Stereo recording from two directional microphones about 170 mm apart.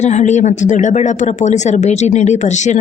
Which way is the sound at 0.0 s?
45° left (ahead or behind).